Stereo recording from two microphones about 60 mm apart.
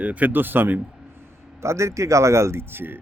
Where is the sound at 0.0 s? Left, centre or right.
Right.